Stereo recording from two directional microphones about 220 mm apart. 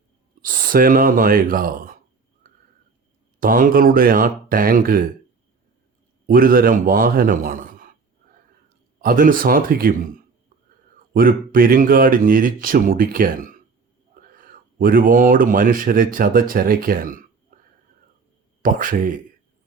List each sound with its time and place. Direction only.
0.4 s speech: 40° right (ahead or behind)
3.4 s speech: 40° right (ahead or behind)
6.2 s speech: 40° right (ahead or behind)
9.0 s speech: 40° right (ahead or behind)
11.1 s speech: 40° right (ahead or behind)
14.2 s whispering: 40° right (ahead or behind)
14.8 s speech: 40° right (ahead or behind)
17.5 s whispering: 45° right (ahead or behind)
18.6 s speech: 40° right (ahead or behind)